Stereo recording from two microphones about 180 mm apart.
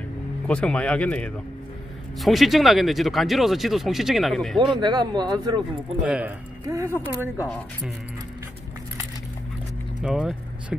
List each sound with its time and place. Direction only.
0.5 s speech: 5° left (ahead or behind)
4.6 s speech: 25° right (ahead or behind)
6.0 s speech: 5° right (ahead or behind)
10.0 s speech: 5° right (ahead or behind)